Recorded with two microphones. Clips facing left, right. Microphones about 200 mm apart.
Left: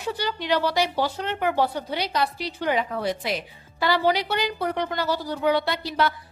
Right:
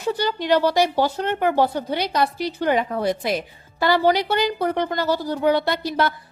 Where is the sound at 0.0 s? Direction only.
45° right (ahead or behind).